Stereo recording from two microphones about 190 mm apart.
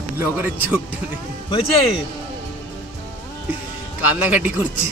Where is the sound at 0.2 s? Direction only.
10° right (ahead or behind).